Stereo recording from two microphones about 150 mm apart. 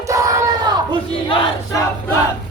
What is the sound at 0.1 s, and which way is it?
Crowd, 20° right (ahead or behind).